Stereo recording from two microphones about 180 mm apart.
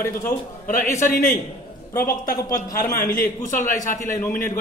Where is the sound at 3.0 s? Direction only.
50° left (ahead or behind).